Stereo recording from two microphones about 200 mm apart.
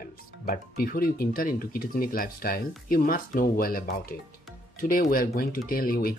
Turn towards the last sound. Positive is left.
turn(degrees=45)  # may be behind; listen again after turning